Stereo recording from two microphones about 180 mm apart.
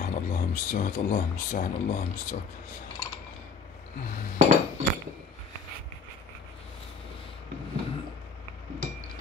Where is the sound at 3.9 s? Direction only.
50° left (ahead or behind).